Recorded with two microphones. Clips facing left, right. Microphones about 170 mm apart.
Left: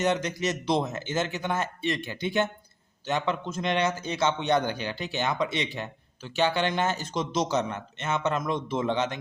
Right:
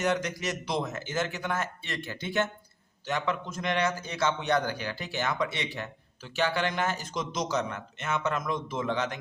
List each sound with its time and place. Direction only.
0.0 s a man's voice: 20° left (ahead or behind)